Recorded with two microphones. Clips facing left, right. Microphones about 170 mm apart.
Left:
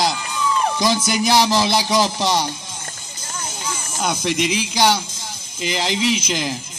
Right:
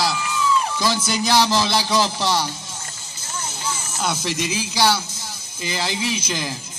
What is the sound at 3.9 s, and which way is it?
Music, 15° left (ahead or behind).